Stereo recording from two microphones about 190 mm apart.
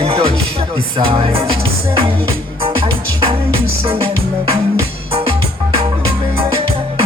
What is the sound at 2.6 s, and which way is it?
Music, 30° right (ahead or behind).